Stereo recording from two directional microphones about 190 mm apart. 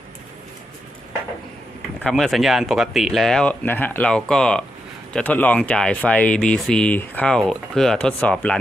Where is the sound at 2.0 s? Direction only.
5° left (ahead or behind).